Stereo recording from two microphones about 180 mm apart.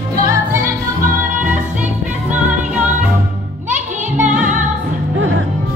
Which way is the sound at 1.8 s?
10° right (ahead or behind).